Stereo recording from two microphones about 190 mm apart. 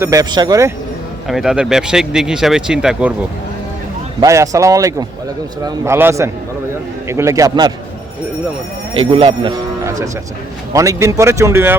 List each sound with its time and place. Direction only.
0.0 s speech: 15° right (ahead or behind)
1.3 s speech: 5° right (ahead or behind)
4.2 s speech: 15° right (ahead or behind)
9.0 s speech: 30° right (ahead or behind); by 11.8 s 10° right (ahead or behind)